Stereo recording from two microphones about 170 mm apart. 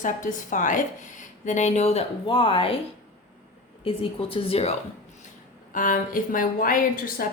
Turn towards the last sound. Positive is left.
turn(degrees=55)  # may be behind; listen again after turning